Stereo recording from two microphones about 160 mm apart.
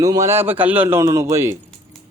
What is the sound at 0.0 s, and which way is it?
Speech, 20° right (ahead or behind).